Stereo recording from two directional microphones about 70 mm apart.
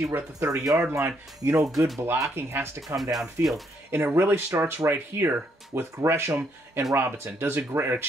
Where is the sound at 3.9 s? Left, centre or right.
Right.